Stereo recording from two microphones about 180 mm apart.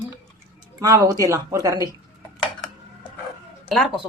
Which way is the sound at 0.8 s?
20° right (ahead or behind).